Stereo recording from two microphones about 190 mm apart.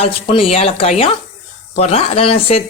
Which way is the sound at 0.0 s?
30° left (ahead or behind).